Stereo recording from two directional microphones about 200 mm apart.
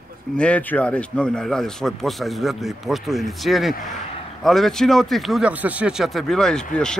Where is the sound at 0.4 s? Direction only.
5° left (ahead or behind).